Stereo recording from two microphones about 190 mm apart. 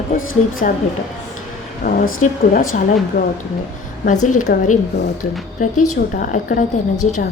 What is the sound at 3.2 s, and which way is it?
A woman's voice, 50° left (ahead or behind).